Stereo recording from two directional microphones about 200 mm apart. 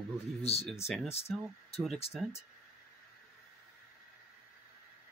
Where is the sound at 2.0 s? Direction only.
30° left (ahead or behind).